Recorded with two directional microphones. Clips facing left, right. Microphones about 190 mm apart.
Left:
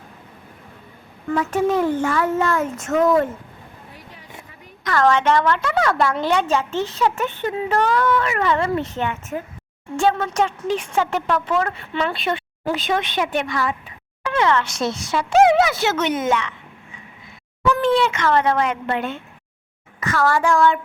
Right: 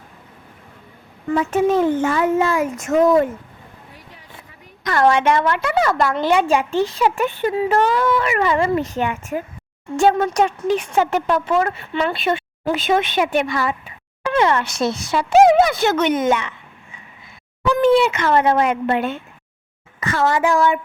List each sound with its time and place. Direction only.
1.4 s a child's voice: 20° right (ahead or behind)
4.9 s a woman's voice: 10° right (ahead or behind)
6.5 s a woman's voice: 15° right (ahead or behind)
11.7 s a woman's voice: 5° right (ahead or behind)
15.3 s speech: centre (ahead or behind)
17.8 s a woman's voice: 10° right (ahead or behind)
20.0 s a child's voice: 25° right (ahead or behind)